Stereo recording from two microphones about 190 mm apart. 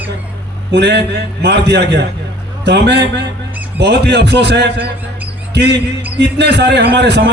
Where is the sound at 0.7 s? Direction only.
65° right (ahead or behind).